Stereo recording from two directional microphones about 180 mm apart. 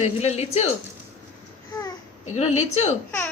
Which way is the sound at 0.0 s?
35° left (ahead or behind).